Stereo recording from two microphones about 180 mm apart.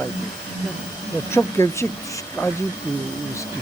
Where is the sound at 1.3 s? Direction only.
15° left (ahead or behind).